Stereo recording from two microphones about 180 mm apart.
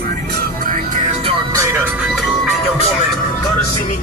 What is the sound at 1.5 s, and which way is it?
Music, 15° right (ahead or behind).